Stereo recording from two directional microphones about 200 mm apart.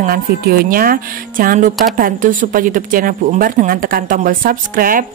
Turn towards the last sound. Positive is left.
turn(degrees=-45)  # may be behind; listen again after turning